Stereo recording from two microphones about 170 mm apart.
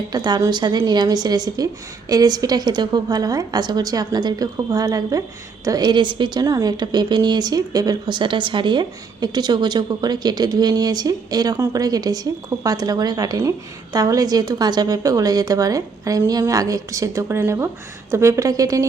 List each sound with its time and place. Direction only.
0.1 s a woman's voice: 25° right (ahead or behind)